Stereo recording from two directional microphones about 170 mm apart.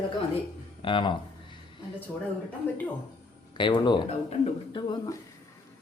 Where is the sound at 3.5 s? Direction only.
30° left (ahead or behind).